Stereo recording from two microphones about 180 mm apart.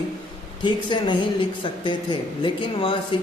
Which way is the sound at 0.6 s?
25° left (ahead or behind).